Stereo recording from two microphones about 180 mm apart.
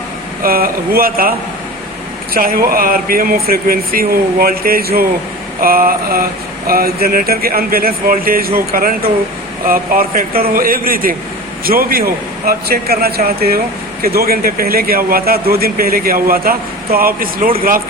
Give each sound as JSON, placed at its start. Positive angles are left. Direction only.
{"t": 0.4, "sound": "a man's voice", "side_deg": -55}